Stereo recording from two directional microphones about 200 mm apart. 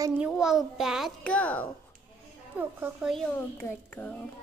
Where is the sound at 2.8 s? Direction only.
5° right (ahead or behind).